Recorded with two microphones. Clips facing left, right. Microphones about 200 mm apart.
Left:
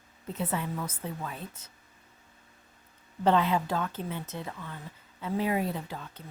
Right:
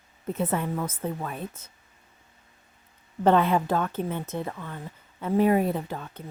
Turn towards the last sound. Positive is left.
turn(degrees=-55)  # may be behind; listen again after turning